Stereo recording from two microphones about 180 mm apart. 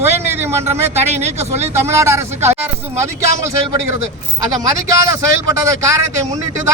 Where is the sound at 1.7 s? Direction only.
15° right (ahead or behind).